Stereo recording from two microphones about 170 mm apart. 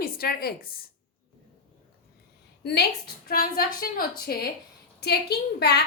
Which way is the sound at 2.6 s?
75° left (ahead or behind).